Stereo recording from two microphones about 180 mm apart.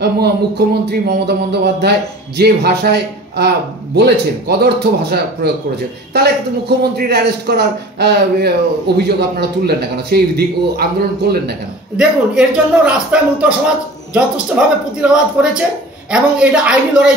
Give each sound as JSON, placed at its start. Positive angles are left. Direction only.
{"t": 0.0, "sound": "speech", "side_deg": -65}
{"t": 6.8, "sound": "speech", "side_deg": -65}
{"t": 12.0, "sound": "speech", "side_deg": -5}
{"t": 14.6, "sound": "speech", "side_deg": -5}